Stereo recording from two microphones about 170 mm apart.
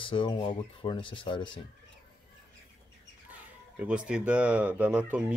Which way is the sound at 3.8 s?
5° right (ahead or behind).